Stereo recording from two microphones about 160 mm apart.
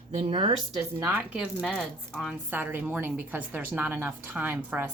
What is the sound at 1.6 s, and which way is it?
A woman's voice, 5° left (ahead or behind).